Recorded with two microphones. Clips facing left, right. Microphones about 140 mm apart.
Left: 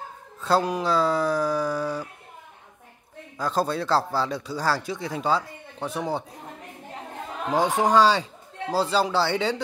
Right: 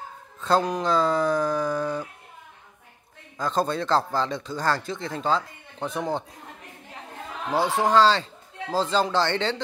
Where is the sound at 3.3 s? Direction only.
5° left (ahead or behind).